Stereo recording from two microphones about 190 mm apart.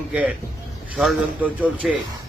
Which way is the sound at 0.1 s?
5° right (ahead or behind).